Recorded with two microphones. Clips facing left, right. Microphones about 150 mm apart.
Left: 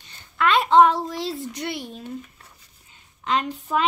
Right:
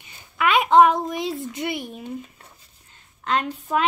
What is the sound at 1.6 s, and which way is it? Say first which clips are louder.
Speech: right 2 dB; 15° right (ahead or behind).